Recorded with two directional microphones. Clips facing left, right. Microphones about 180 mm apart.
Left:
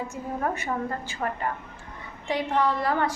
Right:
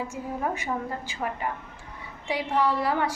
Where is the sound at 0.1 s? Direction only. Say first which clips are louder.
Left 1 dB; 10° right (ahead or behind).